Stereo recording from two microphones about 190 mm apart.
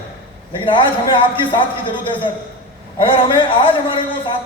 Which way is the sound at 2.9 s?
25° left (ahead or behind).